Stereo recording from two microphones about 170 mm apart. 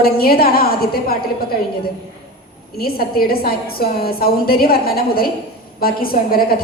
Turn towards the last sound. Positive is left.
turn(degrees=60)  # may be behind; listen again after turning